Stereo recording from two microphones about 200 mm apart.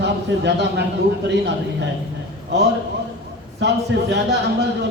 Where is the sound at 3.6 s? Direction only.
60° right (ahead or behind).